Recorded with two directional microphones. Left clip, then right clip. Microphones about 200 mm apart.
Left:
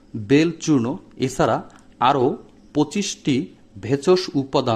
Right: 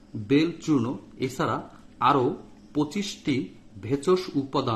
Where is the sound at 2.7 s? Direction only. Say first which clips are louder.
Left 6 dB; 35° left (ahead or behind).